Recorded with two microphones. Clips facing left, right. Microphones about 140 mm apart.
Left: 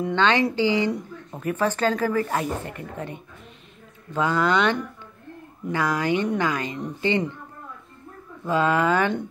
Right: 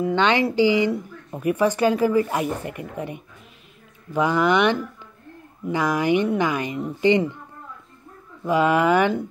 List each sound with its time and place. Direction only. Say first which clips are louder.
0.1 s speech: left 1 dB; 15° right (ahead or behind)
8.5 s speech: right 3 dB; 15° right (ahead or behind)